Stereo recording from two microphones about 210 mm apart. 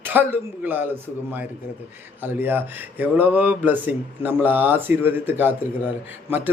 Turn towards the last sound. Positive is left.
turn(degrees=-10)  # may be behind; listen again after turning